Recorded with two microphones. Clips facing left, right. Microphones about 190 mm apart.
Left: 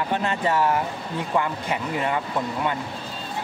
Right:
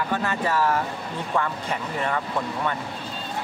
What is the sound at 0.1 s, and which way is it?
Speech, 25° left (ahead or behind).